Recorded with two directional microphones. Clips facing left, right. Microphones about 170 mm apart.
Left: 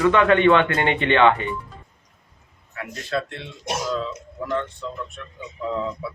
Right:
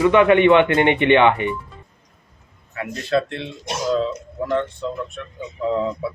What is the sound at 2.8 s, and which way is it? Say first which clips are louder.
A man's voice: right 6 dB; 25° right (ahead or behind).